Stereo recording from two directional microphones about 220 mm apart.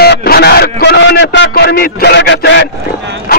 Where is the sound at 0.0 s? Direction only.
45° left (ahead or behind).